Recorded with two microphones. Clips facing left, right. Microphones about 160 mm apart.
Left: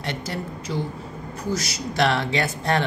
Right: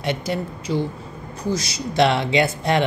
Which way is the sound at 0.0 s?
15° right (ahead or behind).